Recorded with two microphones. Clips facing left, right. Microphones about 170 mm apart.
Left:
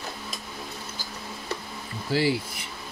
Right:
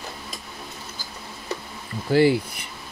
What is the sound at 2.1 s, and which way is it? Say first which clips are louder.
Speech: right 7 dB; 55° right (ahead or behind).